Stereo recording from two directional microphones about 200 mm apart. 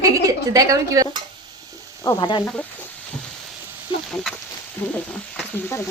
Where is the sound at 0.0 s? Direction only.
15° right (ahead or behind).